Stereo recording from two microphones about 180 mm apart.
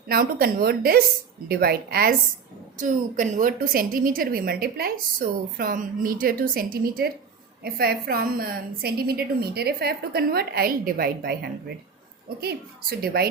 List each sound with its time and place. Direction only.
0.1 s a woman's voice: 55° right (ahead or behind)
2.7 s a woman's voice: 45° right (ahead or behind); by 13.2 s 60° right (ahead or behind)